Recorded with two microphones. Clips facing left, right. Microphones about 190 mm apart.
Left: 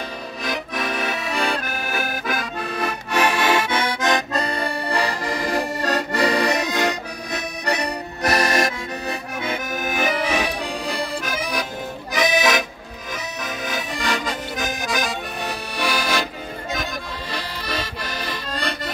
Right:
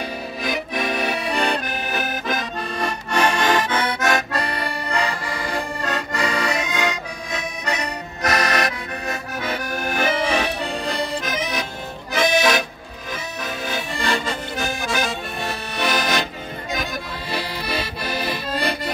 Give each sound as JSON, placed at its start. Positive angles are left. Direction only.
{"t": 0.4, "sound": "accordion", "side_deg": 0}
{"t": 4.8, "sound": "accordion", "side_deg": 35}
{"t": 9.5, "sound": "accordion", "side_deg": 15}
{"t": 15.4, "sound": "accordion", "side_deg": 10}
{"t": 17.3, "sound": "accordion", "side_deg": -10}